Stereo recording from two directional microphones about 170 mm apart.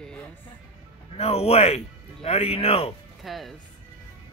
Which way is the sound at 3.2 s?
Centre (ahead or behind).